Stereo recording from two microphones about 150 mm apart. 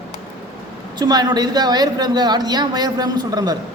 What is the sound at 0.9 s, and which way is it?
A man's voice, 25° right (ahead or behind).